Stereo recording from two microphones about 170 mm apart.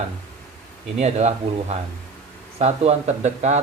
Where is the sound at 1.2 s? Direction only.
40° right (ahead or behind).